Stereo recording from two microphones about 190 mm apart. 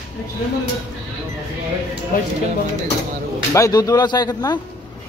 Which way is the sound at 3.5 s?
15° left (ahead or behind).